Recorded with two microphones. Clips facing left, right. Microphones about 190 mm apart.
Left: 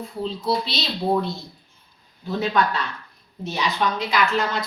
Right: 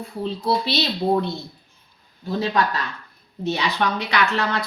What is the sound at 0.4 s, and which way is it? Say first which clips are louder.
Speech: right 4 dB; 60° right (ahead or behind).